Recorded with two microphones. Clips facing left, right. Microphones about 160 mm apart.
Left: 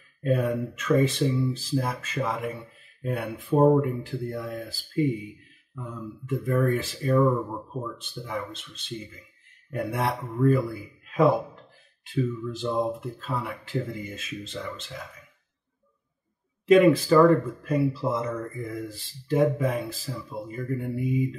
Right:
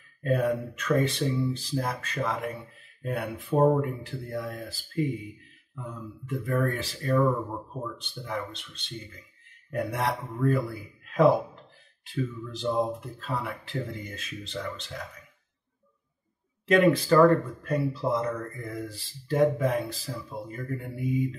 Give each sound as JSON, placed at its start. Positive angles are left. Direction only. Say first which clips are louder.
{"t": 0.2, "sound": "speech", "louder": "left 1 dB", "side_deg": 0}
{"t": 6.2, "sound": "speech", "louder": "left 3 dB", "side_deg": 0}
{"t": 16.6, "sound": "speech", "louder": "left 4 dB", "side_deg": 0}